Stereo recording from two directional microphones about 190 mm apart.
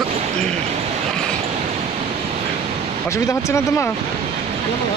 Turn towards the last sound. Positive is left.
turn(degrees=15)  # may be behind; listen again after turning